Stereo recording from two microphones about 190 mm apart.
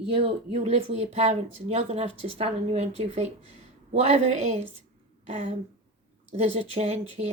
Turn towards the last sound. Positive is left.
turn(degrees=-35)  # may be behind; listen again after turning